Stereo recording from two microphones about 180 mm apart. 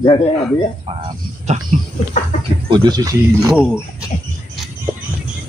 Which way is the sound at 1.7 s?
40° right (ahead or behind).